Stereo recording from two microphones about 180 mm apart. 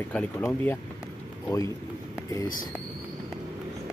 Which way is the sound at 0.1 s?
10° left (ahead or behind).